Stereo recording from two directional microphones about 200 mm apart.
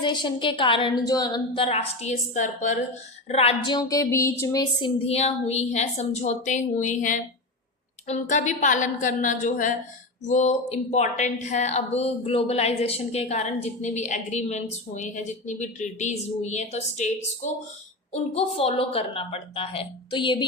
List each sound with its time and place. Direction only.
0.0 s a woman's voice: 25° left (ahead or behind)